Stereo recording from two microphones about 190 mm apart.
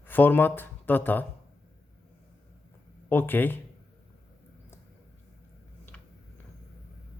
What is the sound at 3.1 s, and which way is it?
Speech, 10° left (ahead or behind).